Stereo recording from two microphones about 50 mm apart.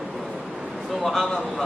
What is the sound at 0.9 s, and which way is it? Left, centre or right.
Speech, centre.